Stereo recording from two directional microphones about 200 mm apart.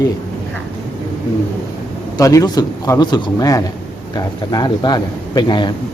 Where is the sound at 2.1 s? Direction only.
15° left (ahead or behind).